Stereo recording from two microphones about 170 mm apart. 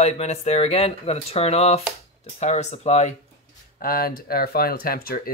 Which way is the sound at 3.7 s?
60° left (ahead or behind).